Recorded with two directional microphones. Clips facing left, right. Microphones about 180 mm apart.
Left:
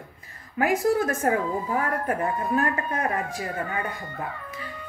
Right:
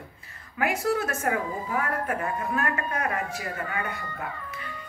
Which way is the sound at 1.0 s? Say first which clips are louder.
Left 4 dB; 35° left (ahead or behind).